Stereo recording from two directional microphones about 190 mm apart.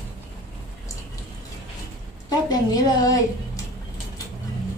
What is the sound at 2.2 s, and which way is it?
Speech, 20° left (ahead or behind).